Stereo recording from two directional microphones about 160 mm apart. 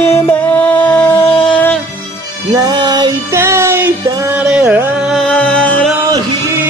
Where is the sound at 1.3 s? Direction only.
35° left (ahead or behind).